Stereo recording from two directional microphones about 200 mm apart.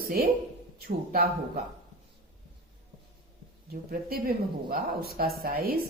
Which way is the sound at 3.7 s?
50° right (ahead or behind).